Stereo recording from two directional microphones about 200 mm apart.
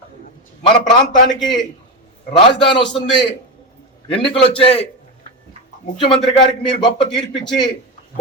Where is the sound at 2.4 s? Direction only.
25° left (ahead or behind).